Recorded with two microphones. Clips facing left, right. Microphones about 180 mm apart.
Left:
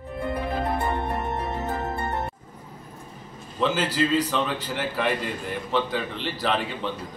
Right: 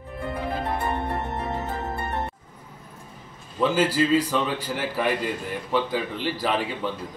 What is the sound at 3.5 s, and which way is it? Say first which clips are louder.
A man's voice: right 2 dB; 10° right (ahead or behind).